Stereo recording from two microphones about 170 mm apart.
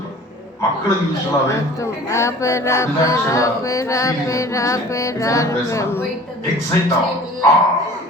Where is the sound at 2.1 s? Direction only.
15° left (ahead or behind).